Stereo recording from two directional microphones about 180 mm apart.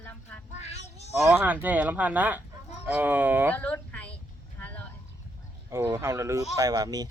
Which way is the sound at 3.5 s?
10° left (ahead or behind).